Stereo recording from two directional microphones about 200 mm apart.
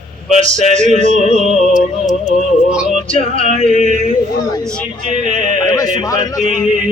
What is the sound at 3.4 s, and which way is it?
Music, 30° left (ahead or behind).